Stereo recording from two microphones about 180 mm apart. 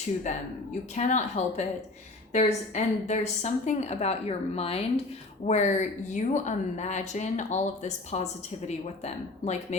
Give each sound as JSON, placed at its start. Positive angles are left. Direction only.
{"t": 0.9, "sound": "a woman's voice", "side_deg": 40}